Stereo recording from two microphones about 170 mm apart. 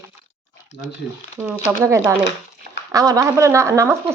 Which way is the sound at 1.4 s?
15° right (ahead or behind).